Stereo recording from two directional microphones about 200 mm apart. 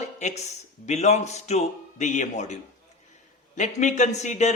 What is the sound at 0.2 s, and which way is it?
Speech, 35° left (ahead or behind).